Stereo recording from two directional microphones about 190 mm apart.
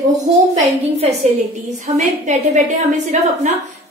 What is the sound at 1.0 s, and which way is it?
A woman's voice, 35° right (ahead or behind).